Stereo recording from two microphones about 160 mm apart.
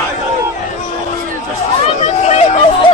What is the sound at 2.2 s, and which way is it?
Chatter, 45° left (ahead or behind).